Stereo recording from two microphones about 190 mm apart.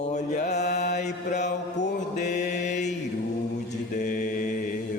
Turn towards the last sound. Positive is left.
turn(degrees=45)  # may be behind; listen again after turning